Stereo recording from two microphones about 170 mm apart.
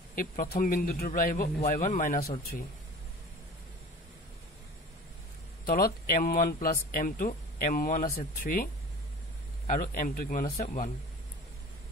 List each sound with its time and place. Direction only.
0.1 s speech: 55° left (ahead or behind)
6.1 s speech: 55° left (ahead or behind)
9.7 s a man's voice: 50° left (ahead or behind)